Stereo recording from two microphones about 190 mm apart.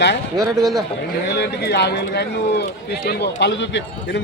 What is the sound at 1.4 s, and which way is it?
A man's voice, 60° left (ahead or behind).